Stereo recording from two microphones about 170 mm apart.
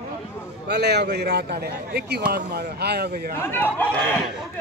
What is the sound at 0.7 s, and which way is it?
A man's voice, 75° right (ahead or behind).